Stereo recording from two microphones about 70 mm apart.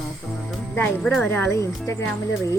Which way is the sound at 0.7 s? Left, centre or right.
Left.